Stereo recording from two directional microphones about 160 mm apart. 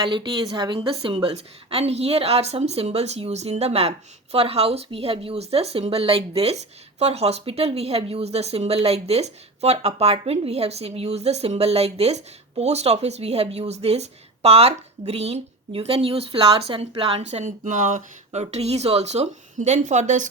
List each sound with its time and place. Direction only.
0.1 s a woman's voice: 30° right (ahead or behind); by 20.2 s 45° right (ahead or behind)